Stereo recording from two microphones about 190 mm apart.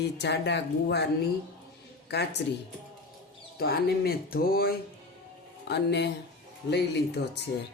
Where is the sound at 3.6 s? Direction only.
55° left (ahead or behind).